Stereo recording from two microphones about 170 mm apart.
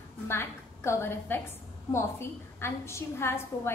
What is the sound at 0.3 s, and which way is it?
A woman's voice, 15° left (ahead or behind).